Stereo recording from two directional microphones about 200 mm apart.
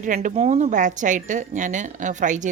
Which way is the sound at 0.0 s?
40° right (ahead or behind).